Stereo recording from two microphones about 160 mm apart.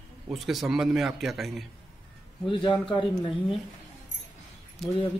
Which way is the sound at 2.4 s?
30° left (ahead or behind).